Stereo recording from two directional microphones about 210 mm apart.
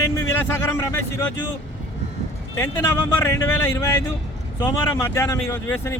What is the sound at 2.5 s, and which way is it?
Speech, 10° left (ahead or behind).